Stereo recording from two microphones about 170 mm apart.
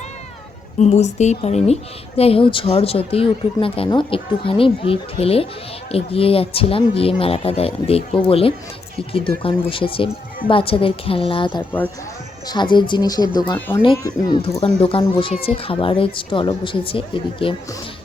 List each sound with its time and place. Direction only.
0.8 s speech: 40° left (ahead or behind)